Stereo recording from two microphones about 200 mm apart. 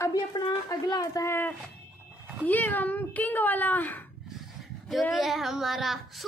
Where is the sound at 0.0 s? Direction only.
20° left (ahead or behind).